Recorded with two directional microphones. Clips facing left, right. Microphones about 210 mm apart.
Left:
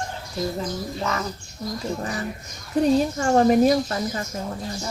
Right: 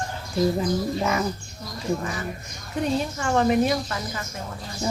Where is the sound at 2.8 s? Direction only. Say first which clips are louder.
Left 6 dB; 35° left (ahead or behind).